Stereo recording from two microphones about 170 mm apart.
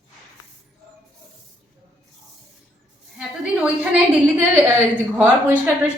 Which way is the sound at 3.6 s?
5° right (ahead or behind).